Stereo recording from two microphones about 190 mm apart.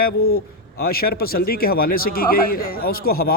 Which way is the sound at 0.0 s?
55° left (ahead or behind).